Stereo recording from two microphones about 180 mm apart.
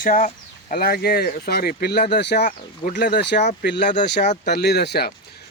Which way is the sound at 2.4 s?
50° left (ahead or behind).